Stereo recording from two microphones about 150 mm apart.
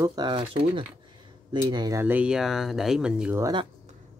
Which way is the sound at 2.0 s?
10° right (ahead or behind).